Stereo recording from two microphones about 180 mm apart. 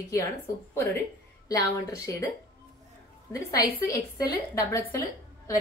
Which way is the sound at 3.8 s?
20° left (ahead or behind).